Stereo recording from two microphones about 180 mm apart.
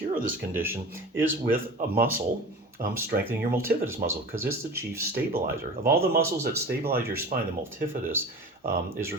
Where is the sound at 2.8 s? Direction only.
55° right (ahead or behind).